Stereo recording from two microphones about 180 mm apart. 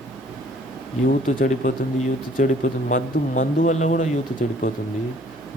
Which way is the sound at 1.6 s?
45° left (ahead or behind).